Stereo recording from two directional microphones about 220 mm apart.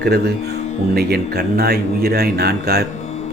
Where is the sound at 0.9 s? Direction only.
45° right (ahead or behind).